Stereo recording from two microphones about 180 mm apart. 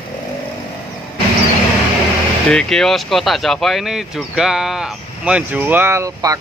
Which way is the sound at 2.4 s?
5° left (ahead or behind).